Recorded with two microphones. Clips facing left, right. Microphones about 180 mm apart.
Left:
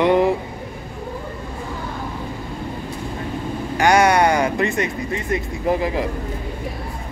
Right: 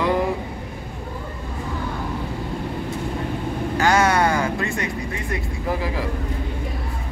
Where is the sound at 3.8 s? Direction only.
15° left (ahead or behind).